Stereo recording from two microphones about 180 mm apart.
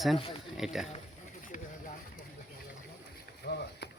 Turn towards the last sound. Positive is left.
turn(degrees=65)  # may be behind; listen again after turning